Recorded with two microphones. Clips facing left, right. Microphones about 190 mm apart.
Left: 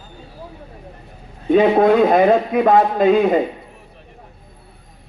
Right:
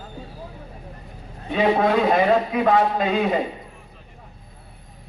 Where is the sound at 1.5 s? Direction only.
50° left (ahead or behind).